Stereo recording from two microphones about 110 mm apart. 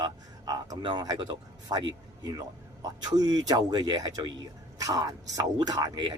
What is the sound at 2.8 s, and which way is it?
Speech, 35° right (ahead or behind).